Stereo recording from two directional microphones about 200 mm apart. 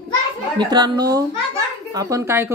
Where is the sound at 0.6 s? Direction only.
20° right (ahead or behind).